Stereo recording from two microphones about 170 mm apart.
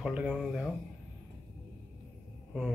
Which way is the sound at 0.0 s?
5° right (ahead or behind).